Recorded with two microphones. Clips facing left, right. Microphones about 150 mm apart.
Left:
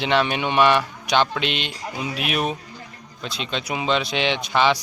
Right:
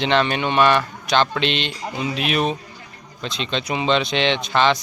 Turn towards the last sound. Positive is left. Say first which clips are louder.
# right 1 dB
turn(degrees=10)  # may be behind; listen again after turning